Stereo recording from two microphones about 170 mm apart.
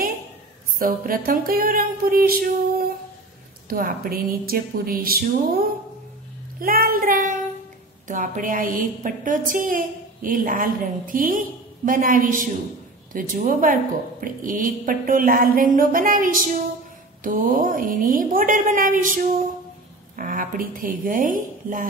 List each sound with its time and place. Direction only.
0.7 s a sound: 55° right (ahead or behind)
8.1 s a woman's voice: 50° right (ahead or behind)
20.2 s a woman's voice: 55° right (ahead or behind)